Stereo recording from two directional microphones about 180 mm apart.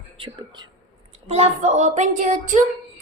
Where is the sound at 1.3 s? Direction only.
40° right (ahead or behind).